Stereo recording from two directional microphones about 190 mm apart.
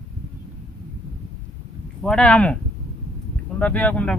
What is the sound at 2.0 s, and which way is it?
Speech, 5° left (ahead or behind).